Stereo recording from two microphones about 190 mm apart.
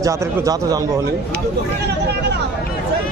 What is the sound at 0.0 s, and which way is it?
Speech, 15° right (ahead or behind).